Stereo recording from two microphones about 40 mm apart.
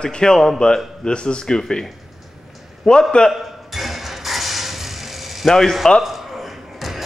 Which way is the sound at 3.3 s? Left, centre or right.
Centre.